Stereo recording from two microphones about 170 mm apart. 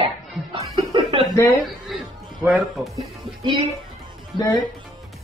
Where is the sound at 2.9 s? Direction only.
25° right (ahead or behind).